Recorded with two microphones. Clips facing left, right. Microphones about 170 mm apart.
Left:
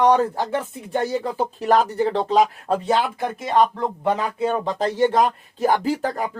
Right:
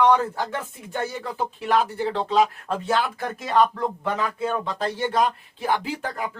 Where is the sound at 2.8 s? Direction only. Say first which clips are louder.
Left 1 dB; 20° left (ahead or behind).